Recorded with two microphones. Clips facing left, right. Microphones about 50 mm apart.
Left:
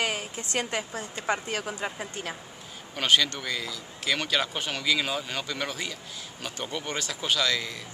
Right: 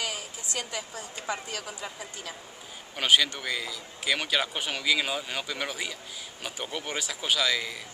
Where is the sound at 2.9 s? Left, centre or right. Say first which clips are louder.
Even; centre.